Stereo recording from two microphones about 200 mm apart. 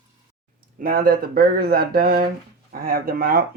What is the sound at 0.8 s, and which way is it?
Speech, 45° right (ahead or behind).